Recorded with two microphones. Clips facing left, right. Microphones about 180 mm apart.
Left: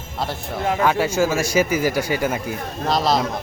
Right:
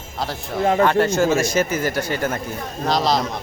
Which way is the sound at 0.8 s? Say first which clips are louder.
Right 1 dB; 5° left (ahead or behind).